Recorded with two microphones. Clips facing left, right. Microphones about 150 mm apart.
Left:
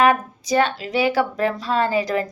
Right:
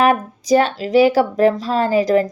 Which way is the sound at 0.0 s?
40° right (ahead or behind).